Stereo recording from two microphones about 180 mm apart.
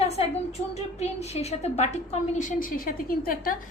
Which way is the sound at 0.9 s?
35° left (ahead or behind).